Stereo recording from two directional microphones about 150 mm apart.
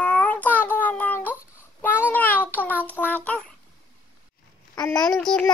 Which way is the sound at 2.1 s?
10° left (ahead or behind).